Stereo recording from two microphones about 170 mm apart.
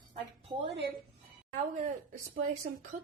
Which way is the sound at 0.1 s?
35° right (ahead or behind).